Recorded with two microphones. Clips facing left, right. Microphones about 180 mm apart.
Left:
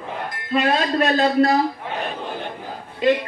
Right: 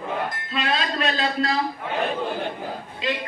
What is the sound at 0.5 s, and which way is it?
A woman's voice, 50° left (ahead or behind).